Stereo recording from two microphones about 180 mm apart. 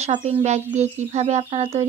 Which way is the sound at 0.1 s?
40° right (ahead or behind).